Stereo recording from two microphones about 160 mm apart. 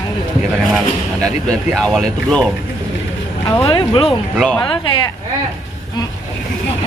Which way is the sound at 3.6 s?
35° left (ahead or behind).